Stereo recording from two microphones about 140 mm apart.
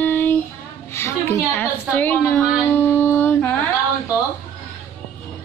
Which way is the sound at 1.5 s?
10° left (ahead or behind).